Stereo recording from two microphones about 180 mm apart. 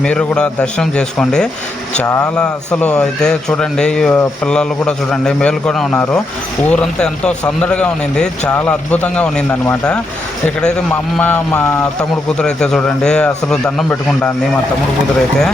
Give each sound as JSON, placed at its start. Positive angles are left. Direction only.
{"t": 0.0, "sound": "speech", "side_deg": 5}
{"t": 2.0, "sound": "speech", "side_deg": 15}
{"t": 2.3, "sound": "speech", "side_deg": 5}
{"t": 11.2, "sound": "speech", "side_deg": 10}